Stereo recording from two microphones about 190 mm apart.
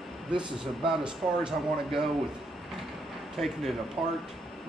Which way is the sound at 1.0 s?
5° right (ahead or behind).